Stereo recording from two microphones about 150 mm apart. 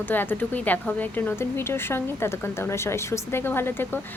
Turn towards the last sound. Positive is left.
turn(degrees=15)  # may be behind; listen again after turning